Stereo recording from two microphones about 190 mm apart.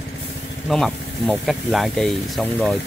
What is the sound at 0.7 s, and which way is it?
Speech, centre (ahead or behind).